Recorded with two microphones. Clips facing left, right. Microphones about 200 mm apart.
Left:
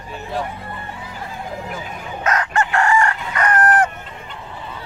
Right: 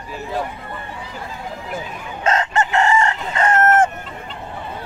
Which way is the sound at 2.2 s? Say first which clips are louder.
Right 1 dB; 25° right (ahead or behind).